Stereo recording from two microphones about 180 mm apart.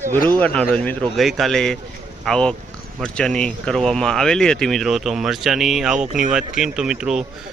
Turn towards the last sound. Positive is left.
turn(degrees=-5)  # may be behind; listen again after turning